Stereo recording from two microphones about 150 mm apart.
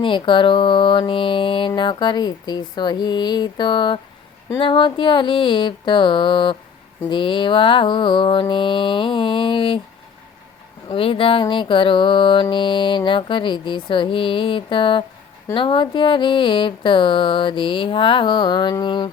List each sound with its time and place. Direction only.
0.0 s mantra: 35° left (ahead or behind)
10.8 s mantra: 35° left (ahead or behind)